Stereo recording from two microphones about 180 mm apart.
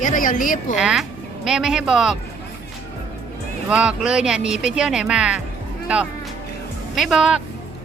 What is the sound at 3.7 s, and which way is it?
Speech, 5° right (ahead or behind).